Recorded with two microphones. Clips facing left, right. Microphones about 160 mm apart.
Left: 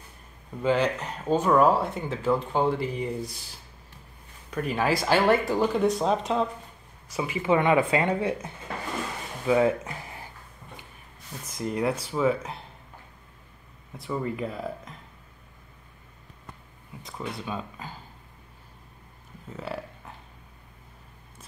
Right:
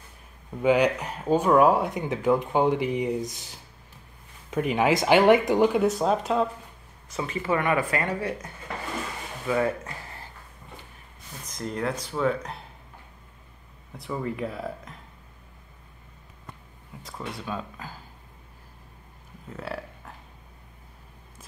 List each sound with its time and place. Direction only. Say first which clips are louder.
0.6 s speech: right 3 dB; 15° right (ahead or behind)
5.8 s speech: right 1 dB; centre (ahead or behind)
7.1 s speech: left 2 dB; 10° left (ahead or behind)
9.5 s speech: left 3 dB; 15° left (ahead or behind)
11.4 s speech: left 3 dB; 5° left (ahead or behind)
13.9 s speech: left 1 dB; centre (ahead or behind)
17.0 s speech: left 1 dB; centre (ahead or behind)
19.5 s burping: even; centre (ahead or behind)